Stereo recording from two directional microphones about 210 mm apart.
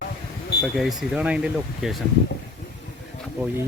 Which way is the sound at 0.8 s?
Centre (ahead or behind).